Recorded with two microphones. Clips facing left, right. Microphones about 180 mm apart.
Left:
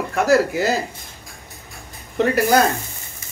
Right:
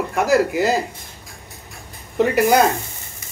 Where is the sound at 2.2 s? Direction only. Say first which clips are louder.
Right 1 dB; 15° right (ahead or behind).